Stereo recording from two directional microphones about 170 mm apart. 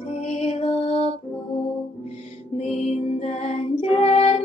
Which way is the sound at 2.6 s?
40° left (ahead or behind).